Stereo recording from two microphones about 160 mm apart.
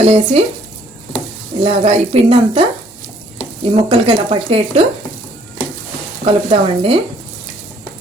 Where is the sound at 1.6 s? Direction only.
40° right (ahead or behind).